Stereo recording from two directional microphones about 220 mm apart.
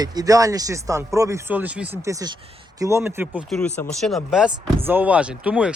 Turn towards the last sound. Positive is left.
turn(degrees=-5)  # may be behind; listen again after turning